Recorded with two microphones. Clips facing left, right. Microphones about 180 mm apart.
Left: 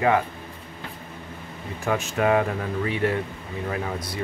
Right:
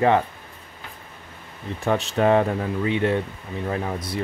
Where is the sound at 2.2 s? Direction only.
30° right (ahead or behind).